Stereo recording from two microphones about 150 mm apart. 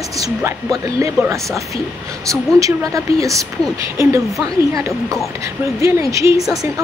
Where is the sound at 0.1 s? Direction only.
20° right (ahead or behind).